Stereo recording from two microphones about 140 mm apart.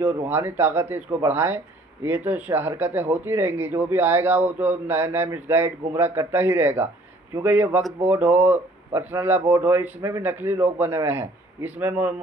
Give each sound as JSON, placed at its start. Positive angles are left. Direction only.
{"t": 0.0, "sound": "speech", "side_deg": -15}